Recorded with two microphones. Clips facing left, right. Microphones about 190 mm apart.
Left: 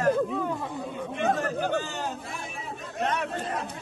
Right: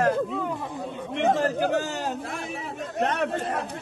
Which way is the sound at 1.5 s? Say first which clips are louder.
Right 3 dB; 75° right (ahead or behind).